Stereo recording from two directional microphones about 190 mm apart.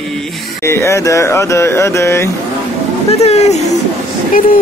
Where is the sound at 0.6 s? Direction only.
15° left (ahead or behind).